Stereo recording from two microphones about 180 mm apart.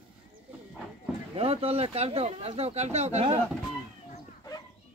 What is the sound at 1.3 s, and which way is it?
Speech, 35° right (ahead or behind).